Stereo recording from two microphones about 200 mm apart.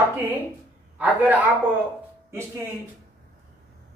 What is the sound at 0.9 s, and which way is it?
Speech, 10° right (ahead or behind).